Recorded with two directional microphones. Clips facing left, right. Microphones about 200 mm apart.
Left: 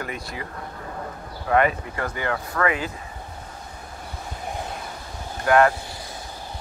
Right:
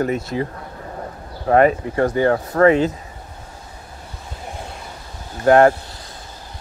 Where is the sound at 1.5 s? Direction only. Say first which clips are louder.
Right 6 dB; 40° right (ahead or behind).